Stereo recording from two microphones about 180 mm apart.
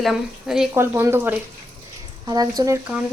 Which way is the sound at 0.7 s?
15° right (ahead or behind).